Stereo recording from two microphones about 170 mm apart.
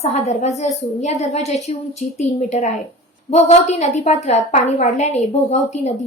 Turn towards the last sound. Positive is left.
turn(degrees=40)  # may be behind; listen again after turning